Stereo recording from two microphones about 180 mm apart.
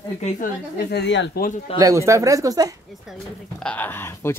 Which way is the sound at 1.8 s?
20° right (ahead or behind).